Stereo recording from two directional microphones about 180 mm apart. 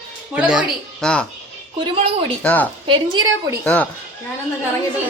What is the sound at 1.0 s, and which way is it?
Speech, 5° left (ahead or behind).